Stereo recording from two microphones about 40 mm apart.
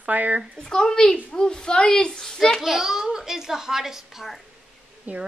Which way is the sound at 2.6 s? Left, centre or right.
Centre.